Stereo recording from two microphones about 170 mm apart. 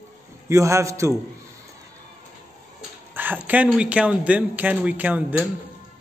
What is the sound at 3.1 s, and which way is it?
A man's voice, 10° right (ahead or behind).